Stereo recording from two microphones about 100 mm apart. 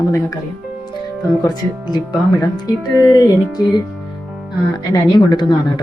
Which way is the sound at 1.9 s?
45° left (ahead or behind).